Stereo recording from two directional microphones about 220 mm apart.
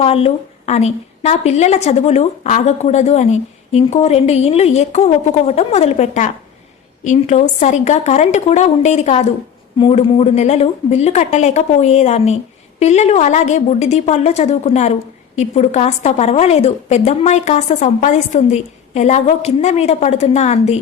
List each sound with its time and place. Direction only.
0.0 s a woman's voice: 30° left (ahead or behind)